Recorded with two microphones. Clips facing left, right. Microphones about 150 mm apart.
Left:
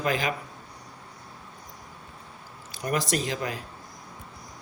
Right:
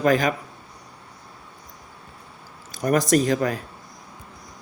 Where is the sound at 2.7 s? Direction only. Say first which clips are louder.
Right 8 dB; 45° right (ahead or behind).